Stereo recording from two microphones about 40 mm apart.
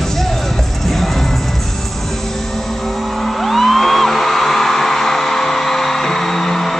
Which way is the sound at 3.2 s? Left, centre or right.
Centre.